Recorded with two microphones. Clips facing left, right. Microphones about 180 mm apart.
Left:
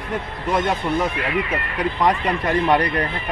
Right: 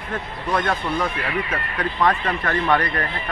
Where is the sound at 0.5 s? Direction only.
20° left (ahead or behind).